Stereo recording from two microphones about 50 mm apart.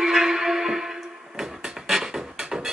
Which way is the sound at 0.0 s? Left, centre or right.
Centre.